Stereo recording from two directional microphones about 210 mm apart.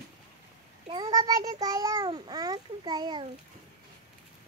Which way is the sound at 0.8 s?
20° right (ahead or behind).